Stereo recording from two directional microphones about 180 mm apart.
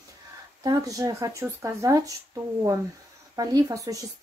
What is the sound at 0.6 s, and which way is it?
Speech, 20° right (ahead or behind).